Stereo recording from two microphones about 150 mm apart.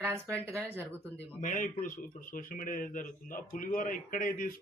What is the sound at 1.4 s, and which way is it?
A man's voice, 60° left (ahead or behind).